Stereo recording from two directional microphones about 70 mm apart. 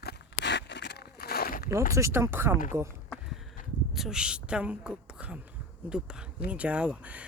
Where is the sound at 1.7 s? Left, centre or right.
Right.